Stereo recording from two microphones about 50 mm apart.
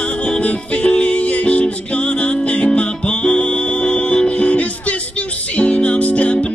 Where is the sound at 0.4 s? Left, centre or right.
Left.